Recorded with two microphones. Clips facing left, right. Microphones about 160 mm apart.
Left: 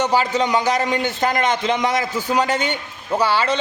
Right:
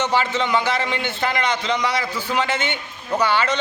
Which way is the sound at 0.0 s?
40° left (ahead or behind).